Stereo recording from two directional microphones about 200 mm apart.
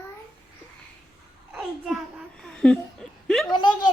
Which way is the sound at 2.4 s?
5° left (ahead or behind).